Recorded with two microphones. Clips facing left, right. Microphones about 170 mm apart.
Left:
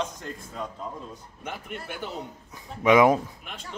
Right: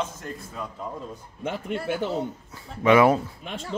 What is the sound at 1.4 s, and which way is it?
Speech, 90° right.